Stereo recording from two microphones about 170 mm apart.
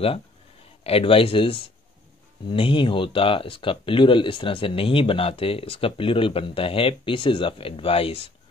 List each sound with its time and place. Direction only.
0.8 s speech: 35° left (ahead or behind)